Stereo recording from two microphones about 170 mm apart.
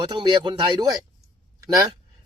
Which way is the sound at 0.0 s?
25° right (ahead or behind).